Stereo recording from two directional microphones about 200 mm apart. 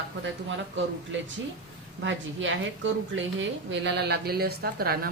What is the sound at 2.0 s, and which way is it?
A woman's voice, 70° right (ahead or behind).